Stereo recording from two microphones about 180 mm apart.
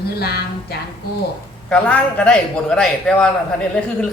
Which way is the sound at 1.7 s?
5° left (ahead or behind).